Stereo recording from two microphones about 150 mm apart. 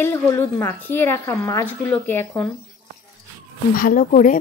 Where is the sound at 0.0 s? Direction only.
15° left (ahead or behind).